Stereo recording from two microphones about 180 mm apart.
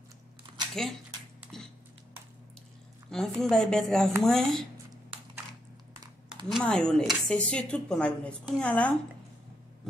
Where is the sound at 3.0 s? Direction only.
Centre (ahead or behind).